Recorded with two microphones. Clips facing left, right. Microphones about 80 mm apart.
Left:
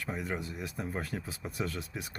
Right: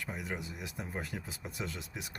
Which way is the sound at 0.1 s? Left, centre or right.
Centre.